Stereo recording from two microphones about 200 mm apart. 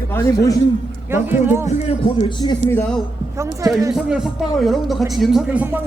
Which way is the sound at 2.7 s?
10° left (ahead or behind).